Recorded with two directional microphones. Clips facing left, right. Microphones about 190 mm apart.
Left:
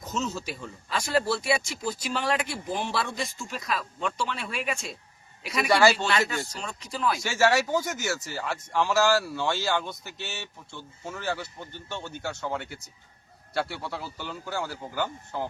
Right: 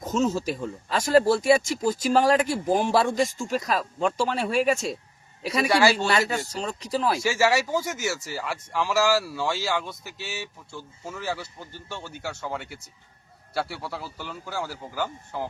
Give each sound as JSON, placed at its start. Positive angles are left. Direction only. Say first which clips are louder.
{"t": 0.0, "sound": "speech", "louder": "right 7 dB", "side_deg": -45}
{"t": 5.6, "sound": "speech", "louder": "even", "side_deg": -5}
{"t": 6.1, "sound": "speech", "louder": "right 3 dB", "side_deg": -40}
{"t": 7.2, "sound": "speech", "louder": "left 2 dB", "side_deg": -5}